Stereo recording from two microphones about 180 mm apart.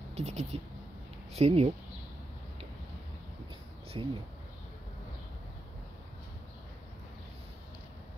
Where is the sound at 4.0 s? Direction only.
30° right (ahead or behind).